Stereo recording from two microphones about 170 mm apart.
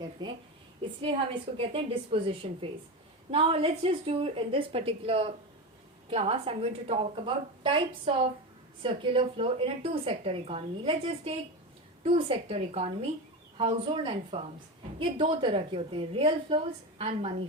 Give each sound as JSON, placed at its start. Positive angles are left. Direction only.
{"t": 0.2, "sound": "a woman's voice", "side_deg": -25}